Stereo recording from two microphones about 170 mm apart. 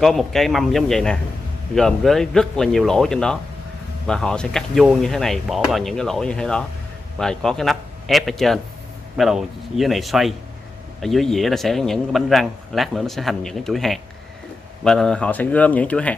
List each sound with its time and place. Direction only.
0.0 s a man's voice: centre (ahead or behind)